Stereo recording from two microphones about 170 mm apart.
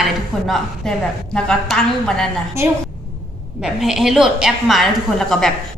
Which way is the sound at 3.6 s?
Centre (ahead or behind).